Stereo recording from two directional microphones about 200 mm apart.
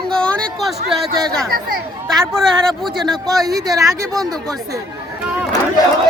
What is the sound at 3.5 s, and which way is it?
Speech, 20° right (ahead or behind).